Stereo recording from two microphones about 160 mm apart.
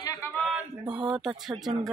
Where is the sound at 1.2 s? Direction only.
5° right (ahead or behind).